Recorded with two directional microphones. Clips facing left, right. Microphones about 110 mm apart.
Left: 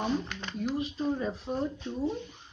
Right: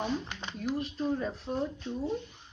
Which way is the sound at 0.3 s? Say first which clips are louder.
Left 1 dB; 20° right (ahead or behind).